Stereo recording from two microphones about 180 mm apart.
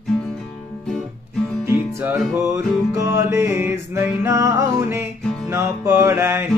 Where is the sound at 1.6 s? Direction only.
15° right (ahead or behind).